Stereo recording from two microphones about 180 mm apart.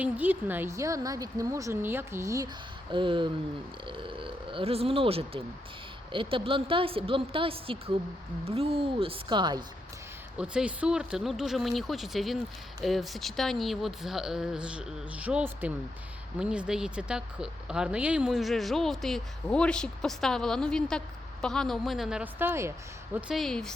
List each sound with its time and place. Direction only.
0.0 s a woman's voice: 10° right (ahead or behind)
2.9 s a woman's voice: 25° right (ahead or behind)
10.3 s a woman's voice: 5° right (ahead or behind)
23.1 s speech: centre (ahead or behind)